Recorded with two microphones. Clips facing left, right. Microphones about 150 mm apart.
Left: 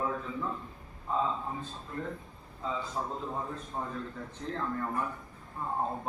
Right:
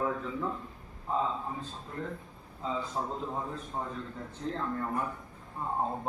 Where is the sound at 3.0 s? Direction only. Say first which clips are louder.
Right 1 dB; 10° right (ahead or behind).